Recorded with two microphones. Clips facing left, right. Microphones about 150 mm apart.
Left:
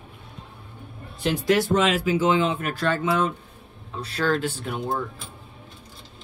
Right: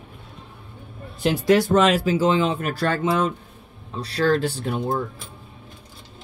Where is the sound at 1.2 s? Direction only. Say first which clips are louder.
Right 3 dB; 45° right (ahead or behind).